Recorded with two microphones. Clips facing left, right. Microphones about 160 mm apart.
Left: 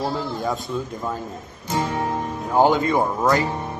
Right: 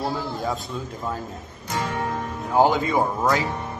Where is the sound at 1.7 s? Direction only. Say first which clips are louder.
Left 3 dB; 20° left (ahead or behind).